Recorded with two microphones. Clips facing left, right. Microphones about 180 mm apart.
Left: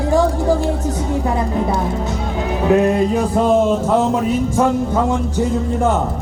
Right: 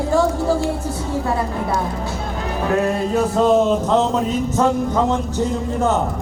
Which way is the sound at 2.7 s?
15° left (ahead or behind).